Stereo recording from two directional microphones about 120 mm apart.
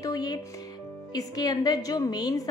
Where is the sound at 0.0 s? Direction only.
35° left (ahead or behind).